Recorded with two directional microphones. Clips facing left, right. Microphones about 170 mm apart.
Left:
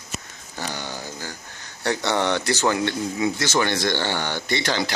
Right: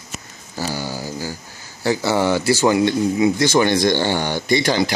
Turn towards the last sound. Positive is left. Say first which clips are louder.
# right 7 dB
turn(degrees=-15)  # may be behind; listen again after turning